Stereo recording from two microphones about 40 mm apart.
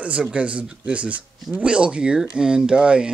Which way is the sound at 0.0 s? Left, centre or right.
Right.